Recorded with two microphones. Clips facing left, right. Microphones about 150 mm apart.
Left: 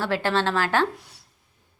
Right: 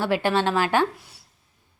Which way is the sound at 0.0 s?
15° right (ahead or behind).